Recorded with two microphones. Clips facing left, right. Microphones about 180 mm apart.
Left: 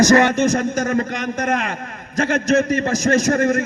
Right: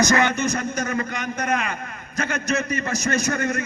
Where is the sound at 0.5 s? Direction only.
45° left (ahead or behind).